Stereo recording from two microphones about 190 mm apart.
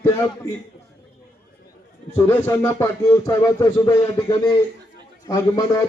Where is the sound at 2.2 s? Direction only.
15° left (ahead or behind).